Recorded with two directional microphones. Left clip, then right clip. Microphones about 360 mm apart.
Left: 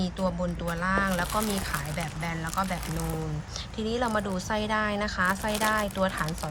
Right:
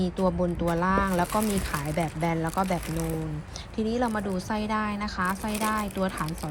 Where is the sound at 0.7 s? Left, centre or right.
Centre.